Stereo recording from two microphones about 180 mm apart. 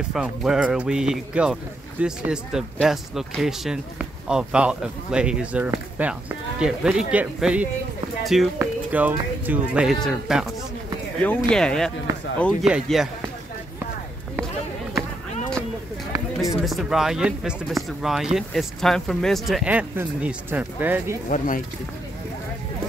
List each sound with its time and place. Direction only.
0.1 s speech: centre (ahead or behind)
16.6 s speech: centre (ahead or behind)
21.3 s speech: 45° left (ahead or behind)